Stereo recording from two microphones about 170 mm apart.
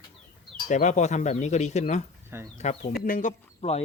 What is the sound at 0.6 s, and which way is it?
Speech, 45° left (ahead or behind).